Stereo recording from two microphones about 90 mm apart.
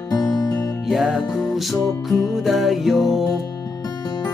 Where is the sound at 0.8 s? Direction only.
Centre (ahead or behind).